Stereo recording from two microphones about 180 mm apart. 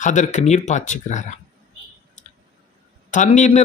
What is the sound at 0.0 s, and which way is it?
A man's voice, 45° left (ahead or behind).